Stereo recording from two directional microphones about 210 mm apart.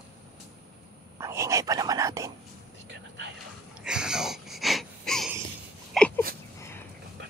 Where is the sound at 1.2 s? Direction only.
15° right (ahead or behind).